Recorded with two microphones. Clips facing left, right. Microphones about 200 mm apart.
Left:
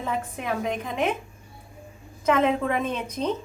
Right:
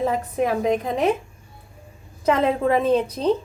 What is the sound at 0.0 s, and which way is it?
Speech, 40° right (ahead or behind).